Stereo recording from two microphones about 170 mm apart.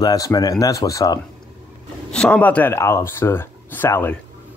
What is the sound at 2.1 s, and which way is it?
Speech, 5° left (ahead or behind).